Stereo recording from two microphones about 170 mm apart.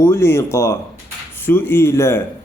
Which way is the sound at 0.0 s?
15° left (ahead or behind).